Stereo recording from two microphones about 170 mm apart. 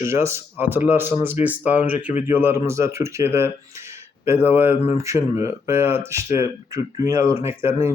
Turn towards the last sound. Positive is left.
turn(degrees=-15)  # may be behind; listen again after turning